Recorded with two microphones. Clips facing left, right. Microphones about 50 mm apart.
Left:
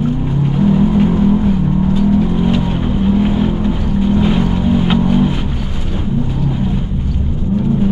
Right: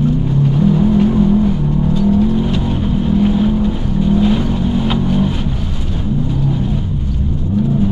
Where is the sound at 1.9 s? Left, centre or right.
Centre.